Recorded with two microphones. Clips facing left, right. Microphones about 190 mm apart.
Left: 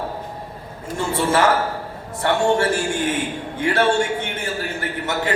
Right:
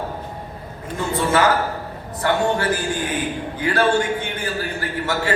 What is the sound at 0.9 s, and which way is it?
A man's voice, 30° left (ahead or behind).